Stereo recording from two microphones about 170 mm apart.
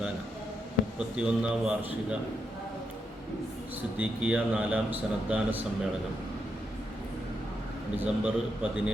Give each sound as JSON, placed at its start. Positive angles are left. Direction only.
{"t": 0.9, "sound": "a man's voice", "side_deg": -5}
{"t": 3.9, "sound": "a man's voice", "side_deg": -5}
{"t": 7.9, "sound": "a man's voice", "side_deg": -5}